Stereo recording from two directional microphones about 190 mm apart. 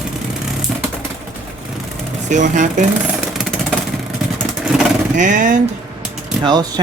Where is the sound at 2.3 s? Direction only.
40° right (ahead or behind).